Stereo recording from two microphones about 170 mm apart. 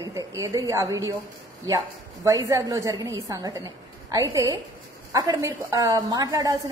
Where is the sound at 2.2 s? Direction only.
20° right (ahead or behind).